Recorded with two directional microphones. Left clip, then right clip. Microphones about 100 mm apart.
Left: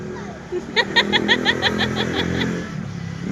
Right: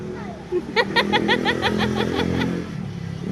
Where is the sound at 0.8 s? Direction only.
60° right (ahead or behind).